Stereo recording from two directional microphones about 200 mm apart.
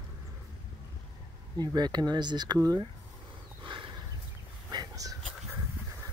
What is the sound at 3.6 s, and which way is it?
Horse, 25° right (ahead or behind).